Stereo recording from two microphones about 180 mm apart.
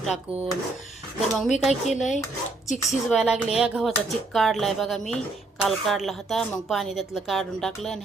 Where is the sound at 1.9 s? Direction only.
40° left (ahead or behind).